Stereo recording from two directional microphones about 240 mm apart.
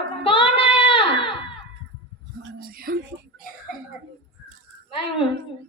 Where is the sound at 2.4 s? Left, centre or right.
Right.